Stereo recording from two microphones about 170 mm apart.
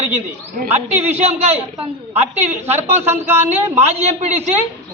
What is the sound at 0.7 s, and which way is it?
A man's voice, 40° right (ahead or behind).